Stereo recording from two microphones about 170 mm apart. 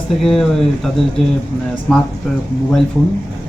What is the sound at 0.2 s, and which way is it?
Speech, centre (ahead or behind).